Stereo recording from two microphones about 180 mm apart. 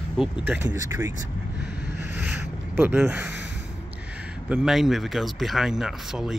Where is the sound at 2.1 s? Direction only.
5° right (ahead or behind).